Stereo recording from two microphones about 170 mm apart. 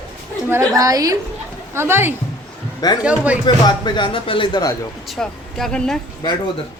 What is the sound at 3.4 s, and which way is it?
Speech, 25° left (ahead or behind).